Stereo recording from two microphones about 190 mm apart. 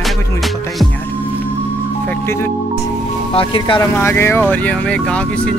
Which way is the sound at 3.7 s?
10° left (ahead or behind).